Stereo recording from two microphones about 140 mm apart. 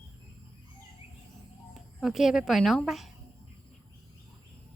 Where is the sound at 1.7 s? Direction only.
Centre (ahead or behind).